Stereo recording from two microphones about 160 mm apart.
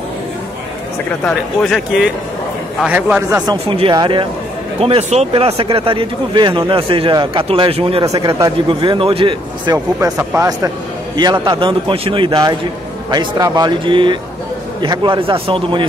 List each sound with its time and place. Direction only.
1.2 s a man's voice: centre (ahead or behind); by 3.5 s 15° right (ahead or behind)
3.6 s speech: 35° right (ahead or behind)
8.0 s speech: 25° right (ahead or behind)
9.9 s speech: 15° right (ahead or behind)
11.4 s speech: 35° right (ahead or behind)